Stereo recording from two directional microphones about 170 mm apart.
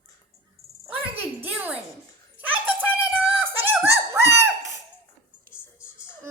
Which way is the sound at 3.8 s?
15° right (ahead or behind).